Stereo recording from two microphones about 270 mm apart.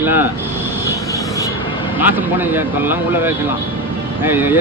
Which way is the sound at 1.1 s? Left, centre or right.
Centre.